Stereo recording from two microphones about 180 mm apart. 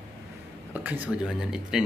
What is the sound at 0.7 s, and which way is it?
Speech, 10° right (ahead or behind).